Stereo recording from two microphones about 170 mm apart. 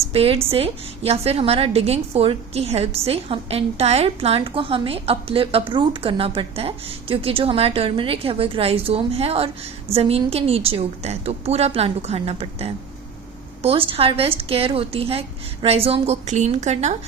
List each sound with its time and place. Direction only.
0.1 s a woman's voice: 35° right (ahead or behind)